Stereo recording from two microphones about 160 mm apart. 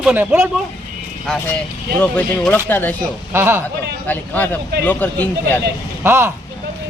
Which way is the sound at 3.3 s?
15° right (ahead or behind).